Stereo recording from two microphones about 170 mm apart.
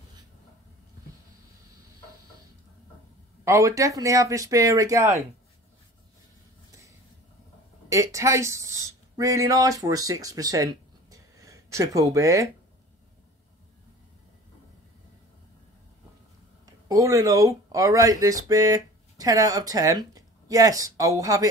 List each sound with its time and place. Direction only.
3.4 s speech: 20° right (ahead or behind)
7.9 s speech: 20° right (ahead or behind)
16.6 s speech: 20° right (ahead or behind)